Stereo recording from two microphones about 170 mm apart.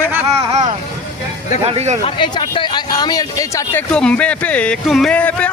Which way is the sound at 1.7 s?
40° right (ahead or behind).